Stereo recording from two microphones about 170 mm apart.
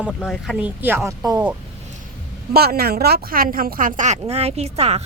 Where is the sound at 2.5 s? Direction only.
65° right (ahead or behind).